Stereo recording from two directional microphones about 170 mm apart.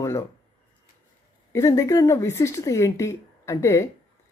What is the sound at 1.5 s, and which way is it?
Speech, 15° left (ahead or behind).